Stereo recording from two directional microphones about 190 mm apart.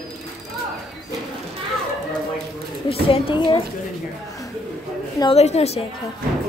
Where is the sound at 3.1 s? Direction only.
25° left (ahead or behind).